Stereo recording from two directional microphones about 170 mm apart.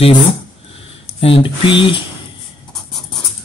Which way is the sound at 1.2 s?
30° left (ahead or behind).